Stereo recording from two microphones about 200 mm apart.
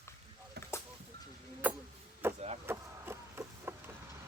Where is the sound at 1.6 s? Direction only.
10° right (ahead or behind).